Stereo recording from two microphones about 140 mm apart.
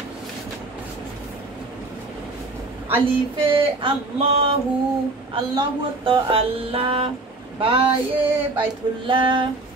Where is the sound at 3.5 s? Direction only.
40° right (ahead or behind).